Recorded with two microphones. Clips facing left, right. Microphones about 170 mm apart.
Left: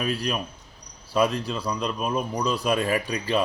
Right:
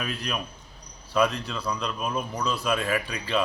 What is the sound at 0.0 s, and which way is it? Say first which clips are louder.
Speech: left 5 dB; 35° left (ahead or behind).